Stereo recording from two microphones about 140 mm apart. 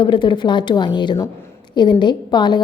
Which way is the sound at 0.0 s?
35° left (ahead or behind).